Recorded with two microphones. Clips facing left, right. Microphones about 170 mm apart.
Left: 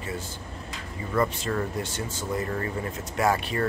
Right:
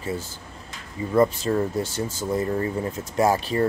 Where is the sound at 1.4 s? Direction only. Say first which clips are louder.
Right 5 dB; 25° right (ahead or behind).